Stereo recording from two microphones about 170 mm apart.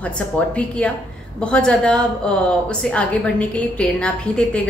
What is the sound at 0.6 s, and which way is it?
A woman's voice, 5° left (ahead or behind).